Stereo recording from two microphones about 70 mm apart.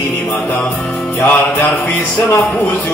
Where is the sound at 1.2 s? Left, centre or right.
Left.